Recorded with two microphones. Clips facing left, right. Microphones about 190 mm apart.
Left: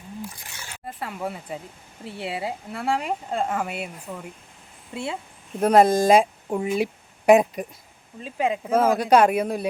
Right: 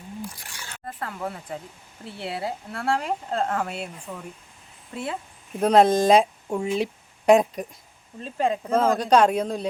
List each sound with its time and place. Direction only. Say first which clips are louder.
0.5 s speech: even; 10° left (ahead or behind)
4.9 s speech: left 1 dB; 15° left (ahead or behind)
5.5 s speech: left 1 dB; 5° left (ahead or behind)